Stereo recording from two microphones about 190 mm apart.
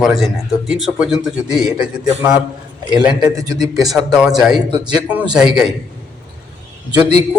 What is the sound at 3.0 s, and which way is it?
Speech, 5° right (ahead or behind).